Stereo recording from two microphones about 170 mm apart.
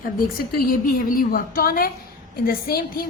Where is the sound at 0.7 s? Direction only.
55° left (ahead or behind).